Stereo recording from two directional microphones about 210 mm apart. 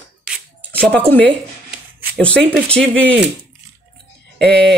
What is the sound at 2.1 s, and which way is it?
Speech, 5° left (ahead or behind).